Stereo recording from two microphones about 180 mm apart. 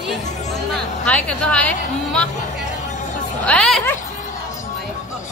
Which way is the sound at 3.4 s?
5° left (ahead or behind).